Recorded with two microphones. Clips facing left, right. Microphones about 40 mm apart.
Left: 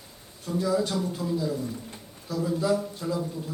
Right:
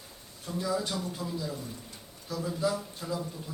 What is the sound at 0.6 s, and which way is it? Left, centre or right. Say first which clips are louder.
Speech: left 5 dB; centre.